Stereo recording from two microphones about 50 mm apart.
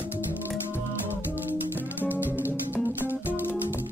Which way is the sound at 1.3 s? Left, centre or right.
Right.